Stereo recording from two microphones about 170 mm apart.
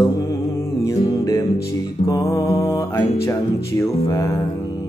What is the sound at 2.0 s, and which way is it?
Speech, 15° left (ahead or behind).